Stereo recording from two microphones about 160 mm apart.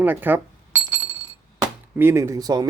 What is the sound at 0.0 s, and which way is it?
Glass, 10° right (ahead or behind).